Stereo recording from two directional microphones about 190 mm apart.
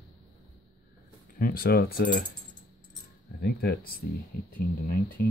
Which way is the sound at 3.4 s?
55° left (ahead or behind).